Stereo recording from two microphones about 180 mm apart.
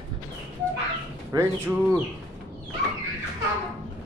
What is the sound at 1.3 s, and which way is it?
Speech, 20° right (ahead or behind).